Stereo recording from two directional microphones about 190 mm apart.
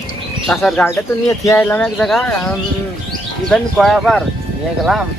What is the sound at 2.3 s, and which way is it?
Speech, 10° left (ahead or behind).